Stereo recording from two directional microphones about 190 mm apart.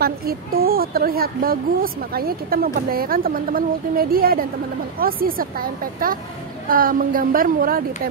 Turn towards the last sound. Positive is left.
turn(degrees=-50)  # may be behind; listen again after turning